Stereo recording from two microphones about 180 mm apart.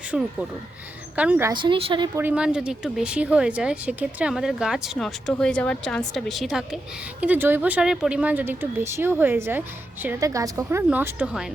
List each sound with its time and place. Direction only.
0.1 s speech: 5° right (ahead or behind)
1.5 s speech: 25° right (ahead or behind)
2.1 s speech: 10° right (ahead or behind)